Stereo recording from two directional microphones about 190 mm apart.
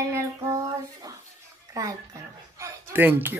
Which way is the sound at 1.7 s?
20° right (ahead or behind).